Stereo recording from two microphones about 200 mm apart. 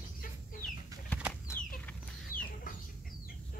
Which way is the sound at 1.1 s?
5° right (ahead or behind).